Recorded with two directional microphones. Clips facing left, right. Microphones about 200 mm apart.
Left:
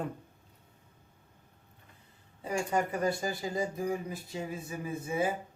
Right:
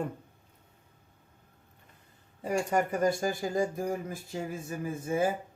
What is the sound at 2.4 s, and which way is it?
Speech, 45° right (ahead or behind).